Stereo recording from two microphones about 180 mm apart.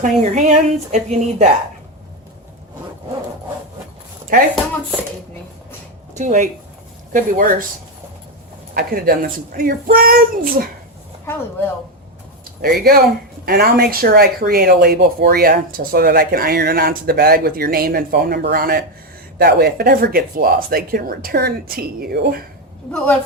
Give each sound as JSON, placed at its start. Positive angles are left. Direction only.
{"t": 0.0, "sound": "a woman's voice", "side_deg": -45}
{"t": 6.1, "sound": "a child's voice", "side_deg": -45}
{"t": 8.7, "sound": "a child's voice", "side_deg": -55}
{"t": 12.6, "sound": "speech", "side_deg": -55}
{"t": 22.9, "sound": "a woman's voice", "side_deg": 5}